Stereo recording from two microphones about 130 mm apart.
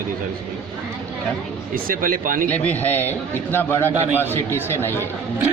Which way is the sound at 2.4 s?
10° left (ahead or behind).